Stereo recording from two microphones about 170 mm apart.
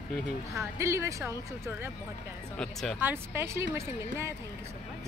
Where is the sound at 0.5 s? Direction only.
15° right (ahead or behind).